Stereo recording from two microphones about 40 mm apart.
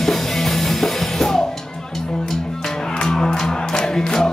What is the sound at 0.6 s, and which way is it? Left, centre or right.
Music, centre.